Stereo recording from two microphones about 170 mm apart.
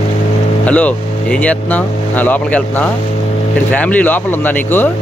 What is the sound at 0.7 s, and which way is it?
Speech, 10° left (ahead or behind).